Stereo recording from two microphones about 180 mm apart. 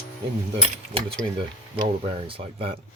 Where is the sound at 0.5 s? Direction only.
30° right (ahead or behind).